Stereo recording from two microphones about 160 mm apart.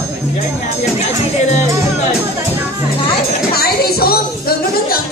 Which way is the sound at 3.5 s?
70° left (ahead or behind).